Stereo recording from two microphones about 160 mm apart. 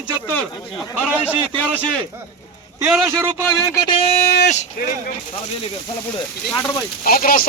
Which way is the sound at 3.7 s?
25° left (ahead or behind).